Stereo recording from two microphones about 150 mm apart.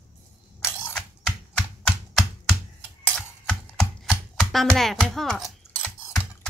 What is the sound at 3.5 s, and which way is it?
Chopping, 5° left (ahead or behind).